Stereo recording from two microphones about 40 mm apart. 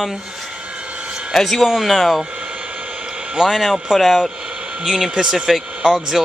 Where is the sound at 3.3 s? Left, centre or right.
Centre.